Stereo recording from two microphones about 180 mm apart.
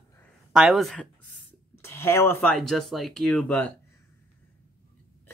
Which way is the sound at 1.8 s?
15° left (ahead or behind).